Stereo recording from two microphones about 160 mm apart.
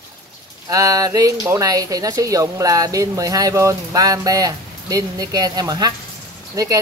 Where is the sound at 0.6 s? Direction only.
20° right (ahead or behind).